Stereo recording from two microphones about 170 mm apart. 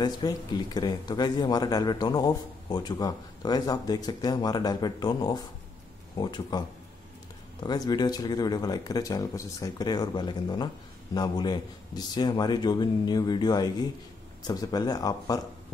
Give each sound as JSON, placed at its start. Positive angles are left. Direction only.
{"t": 0.0, "sound": "speech", "side_deg": 25}
{"t": 7.6, "sound": "speech", "side_deg": 25}